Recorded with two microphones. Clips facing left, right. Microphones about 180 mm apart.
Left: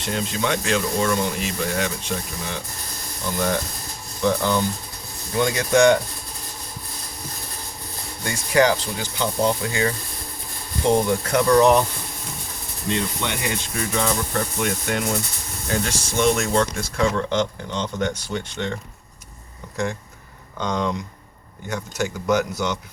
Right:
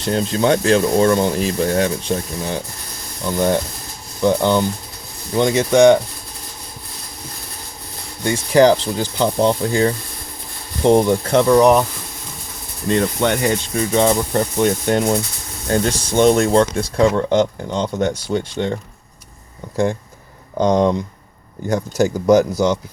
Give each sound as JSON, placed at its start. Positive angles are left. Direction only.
{"t": 0.0, "sound": "speech", "side_deg": -35}
{"t": 4.2, "sound": "speech", "side_deg": -25}
{"t": 8.2, "sound": "speech", "side_deg": -25}
{"t": 12.9, "sound": "speech", "side_deg": -45}
{"t": 13.9, "sound": "speech", "side_deg": -30}
{"t": 16.2, "sound": "speech", "side_deg": -35}